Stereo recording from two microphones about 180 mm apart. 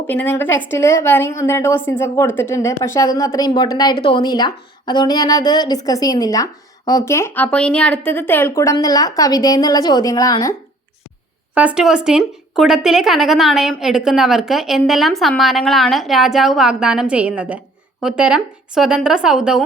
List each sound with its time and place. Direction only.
0.1 s a woman's voice: 10° left (ahead or behind)
11.5 s a woman's voice: 5° right (ahead or behind)